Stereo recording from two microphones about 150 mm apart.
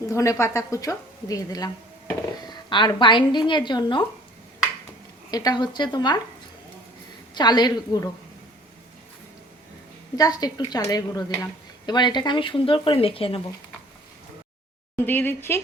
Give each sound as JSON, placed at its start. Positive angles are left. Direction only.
{"t": 0.1, "sound": "a woman's voice", "side_deg": 20}
{"t": 5.3, "sound": "a woman's voice", "side_deg": 25}
{"t": 7.3, "sound": "a woman's voice", "side_deg": 30}
{"t": 10.2, "sound": "a woman's voice", "side_deg": 25}
{"t": 14.9, "sound": "speech", "side_deg": 15}